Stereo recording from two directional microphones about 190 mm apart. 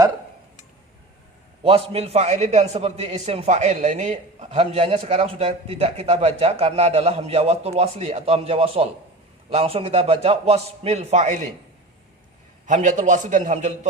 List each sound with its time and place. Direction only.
1.6 s a man's voice: 30° right (ahead or behind)
12.6 s a man's voice: 40° right (ahead or behind)